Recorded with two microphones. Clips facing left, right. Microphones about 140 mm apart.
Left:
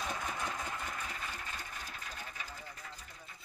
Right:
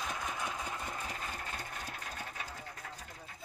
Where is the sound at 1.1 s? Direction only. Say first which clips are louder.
Right 2 dB; 45° right (ahead or behind).